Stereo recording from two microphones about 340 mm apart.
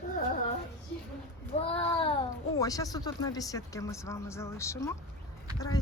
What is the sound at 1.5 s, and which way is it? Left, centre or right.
A child's voice, centre.